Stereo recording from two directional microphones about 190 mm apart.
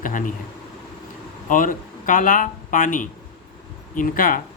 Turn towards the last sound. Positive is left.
turn(degrees=45)  # may be behind; listen again after turning